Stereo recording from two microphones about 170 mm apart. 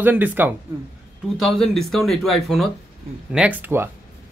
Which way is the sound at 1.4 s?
Centre (ahead or behind).